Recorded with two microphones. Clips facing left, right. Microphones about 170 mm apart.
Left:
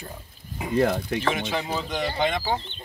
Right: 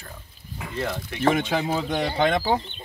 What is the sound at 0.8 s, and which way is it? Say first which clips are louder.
Speech: left 7 dB; 45° left (ahead or behind).